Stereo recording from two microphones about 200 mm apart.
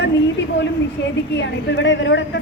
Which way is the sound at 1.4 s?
60° left (ahead or behind).